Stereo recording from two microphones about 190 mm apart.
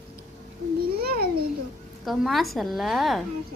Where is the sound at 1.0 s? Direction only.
55° right (ahead or behind).